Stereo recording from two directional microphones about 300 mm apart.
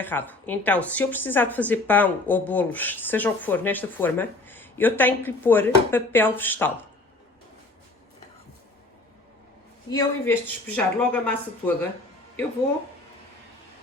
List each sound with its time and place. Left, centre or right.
0.0 s speech: centre
9.9 s speech: centre